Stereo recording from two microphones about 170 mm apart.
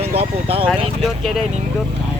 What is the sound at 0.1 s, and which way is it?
Speech, 35° right (ahead or behind).